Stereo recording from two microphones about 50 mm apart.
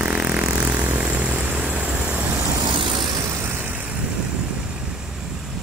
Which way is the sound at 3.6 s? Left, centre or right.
Right.